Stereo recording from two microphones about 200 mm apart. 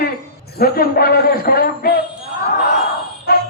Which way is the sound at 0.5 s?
50° left (ahead or behind).